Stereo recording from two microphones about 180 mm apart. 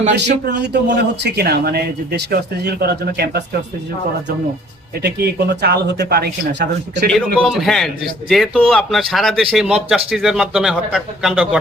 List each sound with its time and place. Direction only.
0.1 s speech: 70° right (ahead or behind)
5.0 s speech: 65° right (ahead or behind)
7.3 s a man's voice: centre (ahead or behind)